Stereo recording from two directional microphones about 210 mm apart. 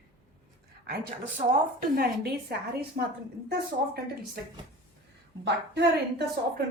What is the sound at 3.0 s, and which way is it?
Speech, 40° right (ahead or behind).